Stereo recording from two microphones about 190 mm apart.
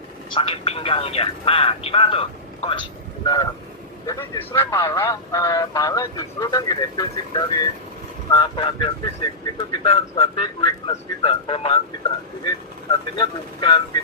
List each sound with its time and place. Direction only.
0.3 s speech: 30° left (ahead or behind)
13.1 s speech: 25° left (ahead or behind)